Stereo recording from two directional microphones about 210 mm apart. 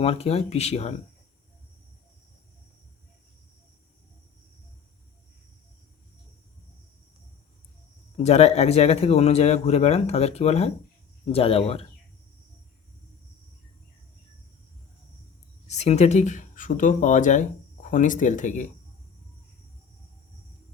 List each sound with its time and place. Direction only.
0.0 s speech: 30° left (ahead or behind)
8.1 s speech: 30° left (ahead or behind)
15.6 s speech: 30° left (ahead or behind)